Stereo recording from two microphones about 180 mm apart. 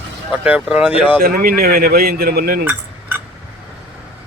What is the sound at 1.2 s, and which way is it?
Speech, 55° right (ahead or behind).